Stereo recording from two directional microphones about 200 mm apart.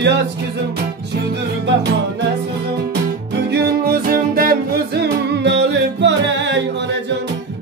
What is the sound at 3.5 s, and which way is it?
Music, 50° right (ahead or behind).